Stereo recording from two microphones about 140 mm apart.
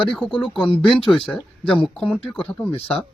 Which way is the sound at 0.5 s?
35° left (ahead or behind).